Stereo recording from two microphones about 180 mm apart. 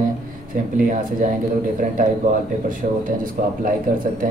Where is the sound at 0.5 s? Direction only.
50° right (ahead or behind).